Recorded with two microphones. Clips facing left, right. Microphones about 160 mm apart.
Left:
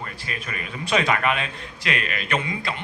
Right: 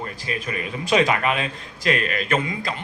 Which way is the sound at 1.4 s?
40° right (ahead or behind).